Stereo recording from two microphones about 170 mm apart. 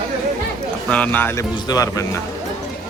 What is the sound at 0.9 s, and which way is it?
A man's voice, 10° left (ahead or behind).